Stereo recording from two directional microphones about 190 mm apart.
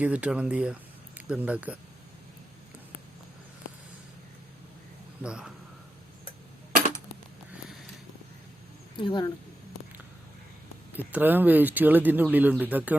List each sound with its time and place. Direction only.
0.0 s speech: 5° right (ahead or behind)
5.2 s speech: 5° right (ahead or behind)
9.0 s speech: 25° left (ahead or behind)
10.9 s speech: 10° right (ahead or behind)